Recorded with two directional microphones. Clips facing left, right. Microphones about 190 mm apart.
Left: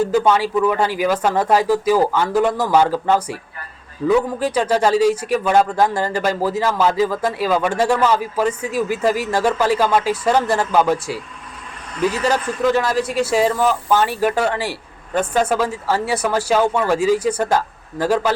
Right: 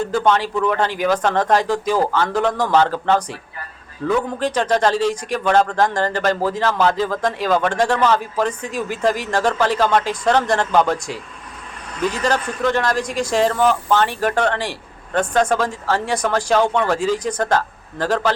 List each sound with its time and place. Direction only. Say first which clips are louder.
0.0 s a man's voice: left 2 dB; 5° left (ahead or behind)